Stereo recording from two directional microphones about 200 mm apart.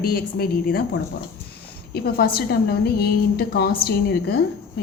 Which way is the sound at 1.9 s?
50° left (ahead or behind).